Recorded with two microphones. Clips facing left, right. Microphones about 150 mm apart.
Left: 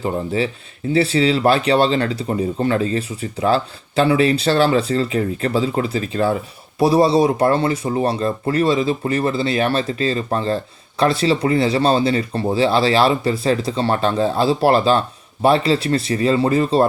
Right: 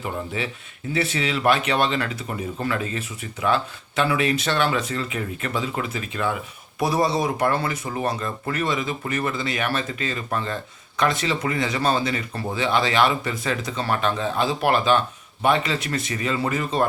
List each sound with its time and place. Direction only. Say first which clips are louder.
0.0 s speech: left 8 dB; 30° left (ahead or behind)